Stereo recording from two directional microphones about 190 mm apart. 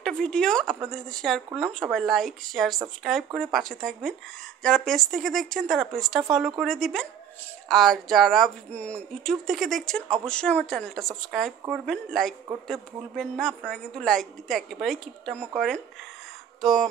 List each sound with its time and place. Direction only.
0.0 s a woman's voice: 5° left (ahead or behind)